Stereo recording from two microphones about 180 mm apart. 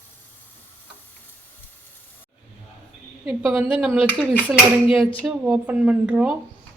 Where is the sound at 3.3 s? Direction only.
10° right (ahead or behind).